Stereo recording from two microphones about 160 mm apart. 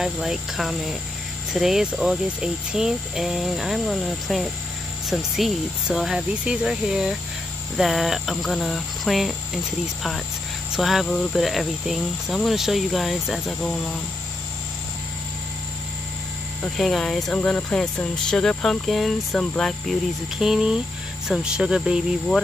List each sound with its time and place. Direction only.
0.0 s speech: centre (ahead or behind)
10.7 s speech: centre (ahead or behind)
16.6 s speech: centre (ahead or behind)